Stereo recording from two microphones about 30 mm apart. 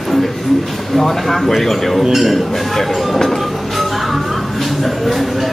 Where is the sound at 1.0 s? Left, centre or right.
Centre.